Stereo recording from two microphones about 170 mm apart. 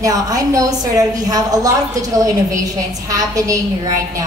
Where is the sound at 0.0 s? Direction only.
20° right (ahead or behind).